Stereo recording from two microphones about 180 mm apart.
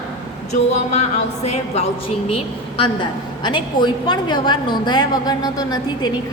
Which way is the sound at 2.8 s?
25° left (ahead or behind).